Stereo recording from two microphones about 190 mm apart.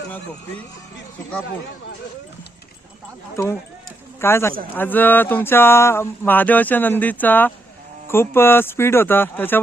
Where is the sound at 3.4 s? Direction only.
15° left (ahead or behind).